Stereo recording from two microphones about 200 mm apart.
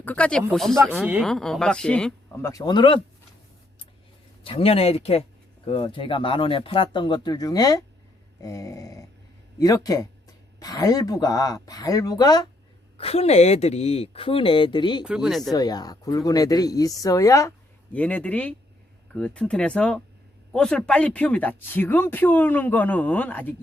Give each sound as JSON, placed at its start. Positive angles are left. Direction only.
{"t": 0.0, "sound": "speech", "side_deg": 5}
{"t": 2.4, "sound": "speech", "side_deg": 15}
{"t": 4.4, "sound": "speech", "side_deg": 30}
{"t": 13.0, "sound": "speech", "side_deg": 30}
{"t": 15.0, "sound": "speech", "side_deg": -5}
{"t": 15.5, "sound": "speech", "side_deg": 20}